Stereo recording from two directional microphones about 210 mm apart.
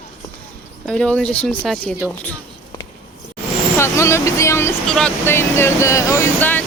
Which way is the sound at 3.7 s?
10° left (ahead or behind).